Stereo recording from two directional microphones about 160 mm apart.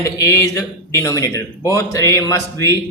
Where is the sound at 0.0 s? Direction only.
15° left (ahead or behind).